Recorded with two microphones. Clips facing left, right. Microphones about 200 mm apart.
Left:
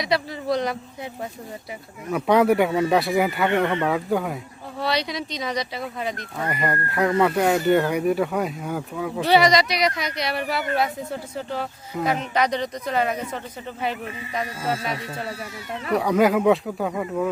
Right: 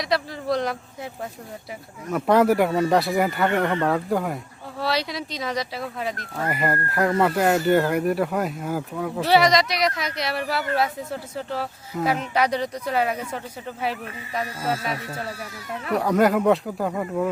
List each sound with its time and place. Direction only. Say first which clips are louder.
0.0 s a man's voice: left 1 dB; centre (ahead or behind)
2.0 s speech: even; centre (ahead or behind)
14.6 s speech: even; centre (ahead or behind)
14.9 s speech: even; 25° left (ahead or behind)
15.9 s speech: left 1 dB; centre (ahead or behind)